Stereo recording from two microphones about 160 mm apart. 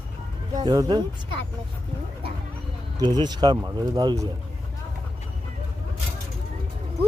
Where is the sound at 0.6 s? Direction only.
25° right (ahead or behind).